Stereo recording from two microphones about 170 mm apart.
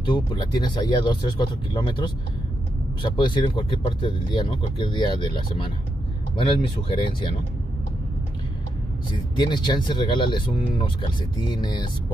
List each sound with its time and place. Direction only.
0.0 s speech: 30° left (ahead or behind)
6.3 s speech: 30° left (ahead or behind)
9.4 s speech: 25° left (ahead or behind)